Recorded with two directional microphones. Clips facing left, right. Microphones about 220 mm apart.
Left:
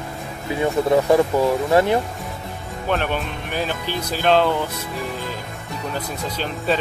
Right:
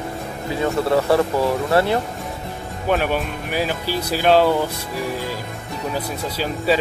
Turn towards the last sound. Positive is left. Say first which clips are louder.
# right 3 dB
turn(degrees=-5)  # may be behind; listen again after turning